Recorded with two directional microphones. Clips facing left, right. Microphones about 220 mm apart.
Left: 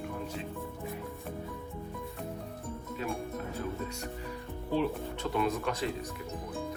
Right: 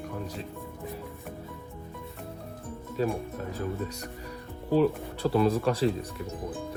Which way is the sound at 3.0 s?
35° right (ahead or behind).